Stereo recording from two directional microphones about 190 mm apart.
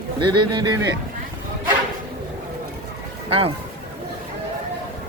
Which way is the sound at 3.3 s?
30° right (ahead or behind).